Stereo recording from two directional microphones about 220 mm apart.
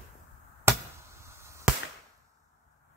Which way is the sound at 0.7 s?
10° right (ahead or behind).